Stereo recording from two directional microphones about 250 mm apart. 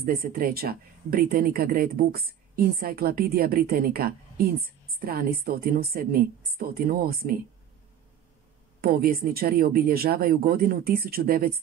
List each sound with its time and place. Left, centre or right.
0.0 s speech: right
8.8 s speech: right